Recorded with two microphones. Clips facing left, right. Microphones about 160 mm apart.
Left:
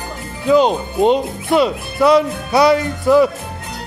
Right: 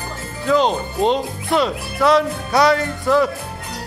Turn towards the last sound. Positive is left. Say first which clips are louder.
# left 4 dB
turn(degrees=5)  # may be behind; listen again after turning